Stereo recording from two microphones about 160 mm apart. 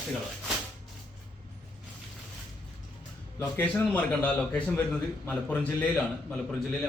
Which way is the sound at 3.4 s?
15° left (ahead or behind).